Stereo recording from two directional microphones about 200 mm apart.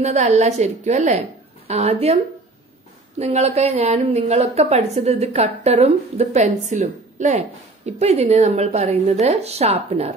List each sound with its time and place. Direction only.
0.0 s a woman's voice: 35° right (ahead or behind)
3.2 s a woman's voice: 30° right (ahead or behind)